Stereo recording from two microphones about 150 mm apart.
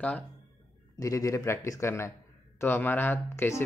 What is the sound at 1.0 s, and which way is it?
Speech, 20° left (ahead or behind).